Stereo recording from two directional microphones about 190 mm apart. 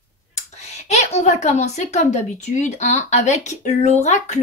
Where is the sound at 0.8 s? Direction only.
35° left (ahead or behind).